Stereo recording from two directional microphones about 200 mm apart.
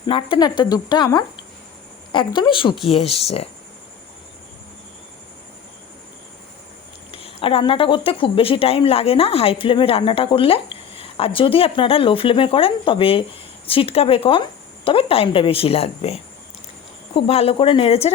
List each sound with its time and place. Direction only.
0.1 s speech: 25° left (ahead or behind)
7.1 s speech: 30° left (ahead or behind)
17.2 s speech: 30° left (ahead or behind)